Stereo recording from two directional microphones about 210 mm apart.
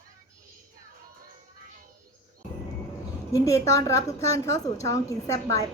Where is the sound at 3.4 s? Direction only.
15° left (ahead or behind).